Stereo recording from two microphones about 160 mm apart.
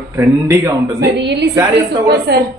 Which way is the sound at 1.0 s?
90° right.